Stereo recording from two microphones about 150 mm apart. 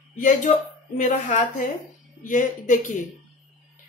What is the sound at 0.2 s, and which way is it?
A woman's voice, 55° left (ahead or behind).